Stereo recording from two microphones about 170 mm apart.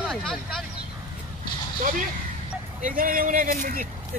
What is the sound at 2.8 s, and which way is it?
A man's voice, 55° right (ahead or behind).